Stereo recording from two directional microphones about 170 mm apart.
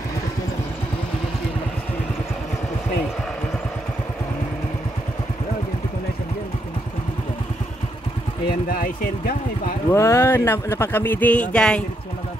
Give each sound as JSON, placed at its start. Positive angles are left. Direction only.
{"t": 8.5, "sound": "speech", "side_deg": 55}
{"t": 9.8, "sound": "speech", "side_deg": 15}